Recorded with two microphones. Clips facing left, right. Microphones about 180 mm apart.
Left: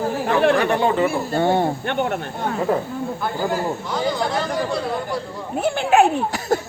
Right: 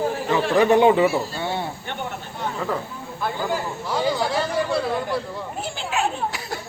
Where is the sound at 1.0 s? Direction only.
55° left (ahead or behind).